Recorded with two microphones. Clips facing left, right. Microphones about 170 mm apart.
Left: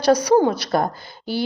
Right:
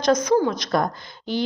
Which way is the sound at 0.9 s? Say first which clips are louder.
Left 1 dB; 5° left (ahead or behind).